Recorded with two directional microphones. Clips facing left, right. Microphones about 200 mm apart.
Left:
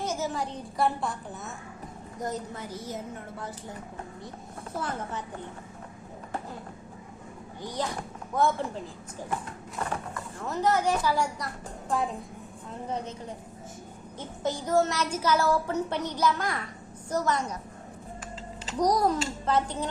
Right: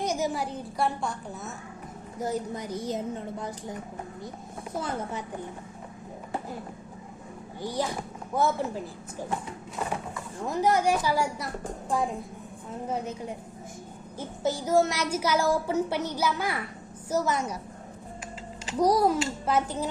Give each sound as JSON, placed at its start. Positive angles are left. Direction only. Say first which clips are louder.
{"t": 0.0, "sound": "a child's voice", "louder": "right 2 dB", "side_deg": -15}
{"t": 7.6, "sound": "a woman's voice", "louder": "right 2 dB", "side_deg": -10}
{"t": 9.9, "sound": "speech", "louder": "right 1 dB", "side_deg": -10}
{"t": 12.9, "sound": "a woman's voice", "louder": "right 2 dB", "side_deg": -10}
{"t": 18.6, "sound": "a woman's voice", "louder": "right 2 dB", "side_deg": -5}